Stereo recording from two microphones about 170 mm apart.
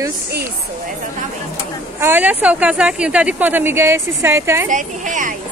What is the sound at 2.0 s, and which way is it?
A woman's voice, 10° right (ahead or behind).